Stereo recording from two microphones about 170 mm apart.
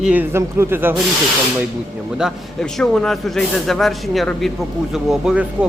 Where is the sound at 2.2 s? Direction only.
Centre (ahead or behind).